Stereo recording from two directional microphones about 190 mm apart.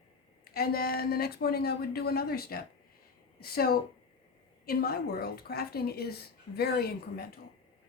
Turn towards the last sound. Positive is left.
turn(degrees=55)  # may be behind; listen again after turning